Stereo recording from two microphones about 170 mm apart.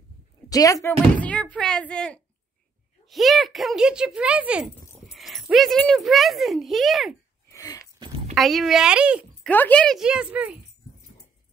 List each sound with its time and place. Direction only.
0.5 s speech: 20° left (ahead or behind)
0.8 s speech: 10° left (ahead or behind)
7.4 s a sound: 20° left (ahead or behind)
8.4 s speech: centre (ahead or behind)
9.4 s speech: 10° left (ahead or behind); by 10.6 s 10° right (ahead or behind)